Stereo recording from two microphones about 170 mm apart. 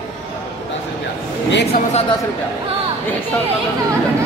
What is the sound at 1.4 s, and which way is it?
Speech, 90° left.